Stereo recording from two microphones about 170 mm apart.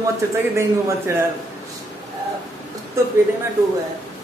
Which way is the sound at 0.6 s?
15° right (ahead or behind).